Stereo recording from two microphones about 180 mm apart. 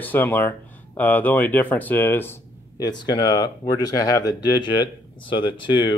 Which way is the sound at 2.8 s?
25° left (ahead or behind).